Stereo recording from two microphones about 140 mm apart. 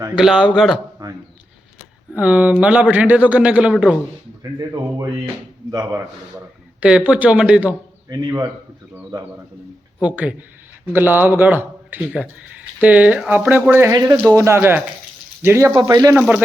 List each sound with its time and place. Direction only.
0.2 s a man's voice: 5° right (ahead or behind)
2.1 s speech: 10° right (ahead or behind)
5.7 s speech: 20° right (ahead or behind)
6.7 s speech: 10° right (ahead or behind)
8.1 s speech: 25° right (ahead or behind)
10.0 s speech: 10° right (ahead or behind)
13.9 s speech: 25° right (ahead or behind)